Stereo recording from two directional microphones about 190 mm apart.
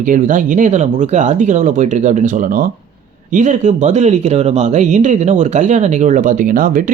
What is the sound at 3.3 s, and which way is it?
Speech, 40° right (ahead or behind).